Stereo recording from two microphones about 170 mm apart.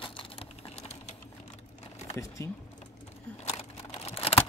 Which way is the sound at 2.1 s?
20° left (ahead or behind).